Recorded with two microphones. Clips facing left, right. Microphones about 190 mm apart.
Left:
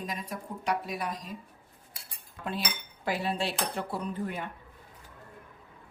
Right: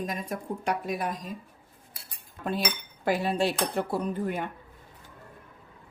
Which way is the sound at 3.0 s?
45° right (ahead or behind).